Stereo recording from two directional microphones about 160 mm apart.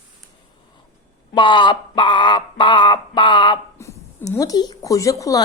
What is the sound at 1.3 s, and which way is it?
Speech, 30° left (ahead or behind).